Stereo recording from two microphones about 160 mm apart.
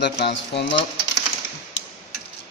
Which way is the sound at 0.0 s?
90° left.